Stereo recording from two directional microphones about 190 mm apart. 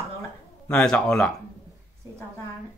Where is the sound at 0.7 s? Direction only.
5° left (ahead or behind).